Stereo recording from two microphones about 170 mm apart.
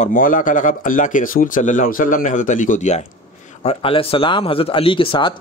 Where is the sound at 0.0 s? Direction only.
50° left (ahead or behind).